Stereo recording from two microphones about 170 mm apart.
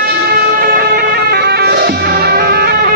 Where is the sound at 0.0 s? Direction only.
65° right (ahead or behind).